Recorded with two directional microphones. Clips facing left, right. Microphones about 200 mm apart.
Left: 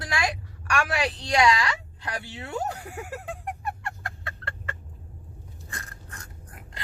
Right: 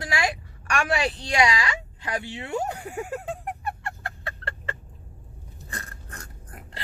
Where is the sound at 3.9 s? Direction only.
35° right (ahead or behind).